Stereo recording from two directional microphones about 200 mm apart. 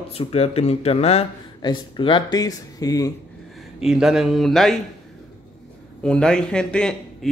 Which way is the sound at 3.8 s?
Centre (ahead or behind).